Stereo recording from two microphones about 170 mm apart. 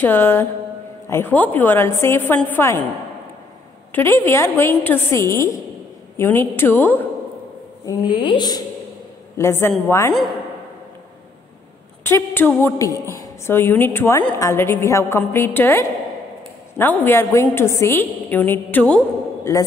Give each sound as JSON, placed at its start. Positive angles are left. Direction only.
{"t": 0.0, "sound": "a woman's voice", "side_deg": 10}
{"t": 3.9, "sound": "a woman's voice", "side_deg": 15}
{"t": 7.8, "sound": "a woman's voice", "side_deg": 20}
{"t": 12.0, "sound": "a woman's voice", "side_deg": 10}